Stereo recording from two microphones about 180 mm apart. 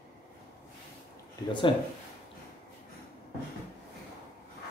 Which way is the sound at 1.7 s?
30° left (ahead or behind).